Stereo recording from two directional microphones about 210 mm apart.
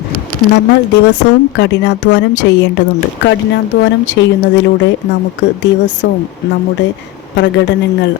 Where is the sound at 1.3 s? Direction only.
55° left (ahead or behind).